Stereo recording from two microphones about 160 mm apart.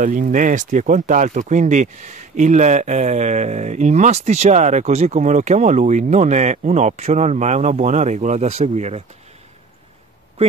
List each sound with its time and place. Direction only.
0.0 s speech: 55° right (ahead or behind)